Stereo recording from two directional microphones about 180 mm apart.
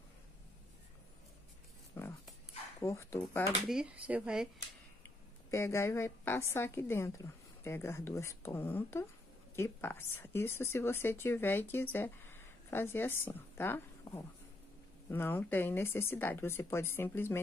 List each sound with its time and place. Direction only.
2.0 s dog: 15° left (ahead or behind)
2.8 s speech: 15° left (ahead or behind)
3.6 s speech: 5° right (ahead or behind)
5.5 s a woman's voice: 15° left (ahead or behind)